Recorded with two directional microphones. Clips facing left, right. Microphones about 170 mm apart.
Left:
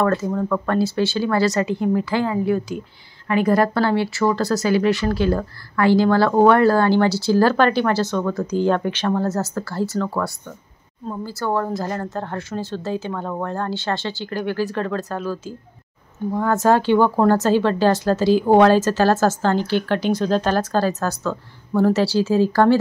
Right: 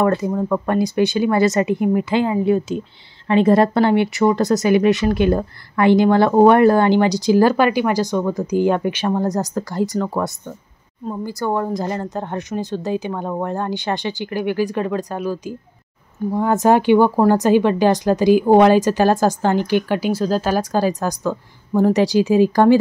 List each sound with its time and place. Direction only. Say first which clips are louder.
0.0 s speech: right 2 dB; 20° right (ahead or behind)